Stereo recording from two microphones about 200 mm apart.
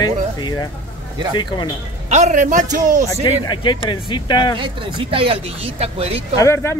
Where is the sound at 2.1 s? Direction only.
35° right (ahead or behind).